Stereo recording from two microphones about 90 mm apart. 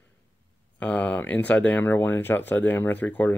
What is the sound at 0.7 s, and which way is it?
Speech, 15° left (ahead or behind).